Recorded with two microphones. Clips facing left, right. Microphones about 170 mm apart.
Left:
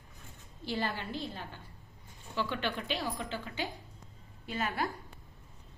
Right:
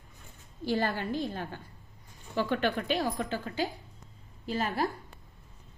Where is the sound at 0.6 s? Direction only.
45° right (ahead or behind).